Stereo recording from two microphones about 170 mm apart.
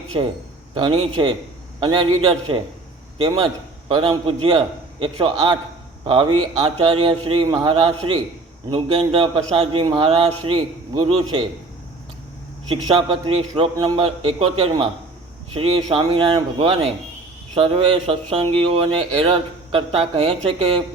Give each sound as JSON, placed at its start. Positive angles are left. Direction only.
{"t": 0.7, "sound": "speech", "side_deg": -30}
{"t": 12.7, "sound": "speech", "side_deg": -30}